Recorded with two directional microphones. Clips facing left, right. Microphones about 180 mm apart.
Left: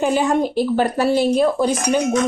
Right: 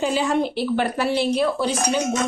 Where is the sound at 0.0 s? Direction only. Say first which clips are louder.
Left 3 dB; 50° left (ahead or behind).